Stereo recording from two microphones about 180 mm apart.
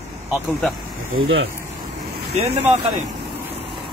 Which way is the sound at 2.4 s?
35° right (ahead or behind).